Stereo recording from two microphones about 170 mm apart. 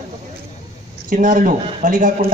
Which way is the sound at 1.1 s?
50° right (ahead or behind).